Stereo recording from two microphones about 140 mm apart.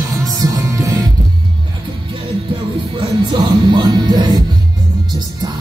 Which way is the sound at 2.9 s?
35° right (ahead or behind).